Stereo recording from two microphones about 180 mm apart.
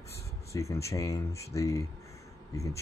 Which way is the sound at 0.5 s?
15° left (ahead or behind).